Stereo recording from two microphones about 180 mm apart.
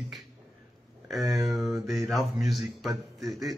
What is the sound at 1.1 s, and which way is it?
A man's voice, centre (ahead or behind).